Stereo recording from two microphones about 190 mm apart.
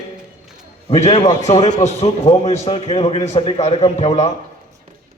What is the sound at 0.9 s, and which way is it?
A man's voice, 35° left (ahead or behind).